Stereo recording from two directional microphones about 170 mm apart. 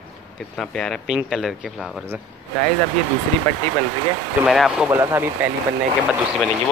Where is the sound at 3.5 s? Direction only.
10° left (ahead or behind).